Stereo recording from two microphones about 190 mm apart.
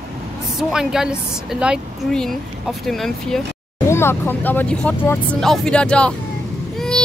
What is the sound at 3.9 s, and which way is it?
Speech, 15° left (ahead or behind).